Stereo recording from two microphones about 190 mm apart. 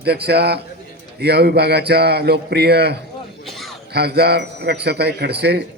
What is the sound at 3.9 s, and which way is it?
Speech, 60° right (ahead or behind).